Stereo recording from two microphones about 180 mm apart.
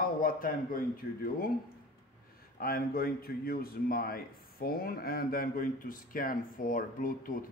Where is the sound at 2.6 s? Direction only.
55° left (ahead or behind).